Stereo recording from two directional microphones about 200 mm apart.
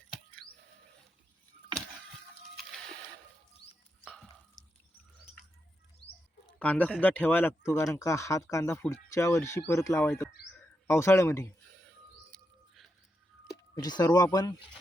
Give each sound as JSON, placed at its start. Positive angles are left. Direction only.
{"t": 4.0, "sound": "stir", "side_deg": 0}
{"t": 6.6, "sound": "speech", "side_deg": 5}
{"t": 12.3, "sound": "bird", "side_deg": 0}
{"t": 13.7, "sound": "speech", "side_deg": 20}